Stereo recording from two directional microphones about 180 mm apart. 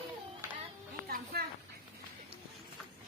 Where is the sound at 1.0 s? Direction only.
60° right (ahead or behind).